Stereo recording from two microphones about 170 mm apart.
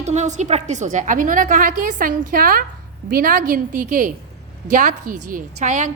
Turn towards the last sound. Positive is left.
turn(degrees=-50)  # may be behind; listen again after turning